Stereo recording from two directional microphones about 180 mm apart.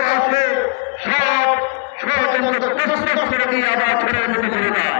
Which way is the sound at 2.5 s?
25° left (ahead or behind).